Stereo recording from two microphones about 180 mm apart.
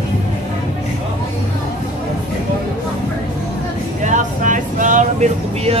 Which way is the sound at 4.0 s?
45° right (ahead or behind).